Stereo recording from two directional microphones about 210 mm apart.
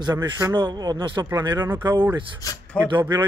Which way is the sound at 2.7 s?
5° left (ahead or behind).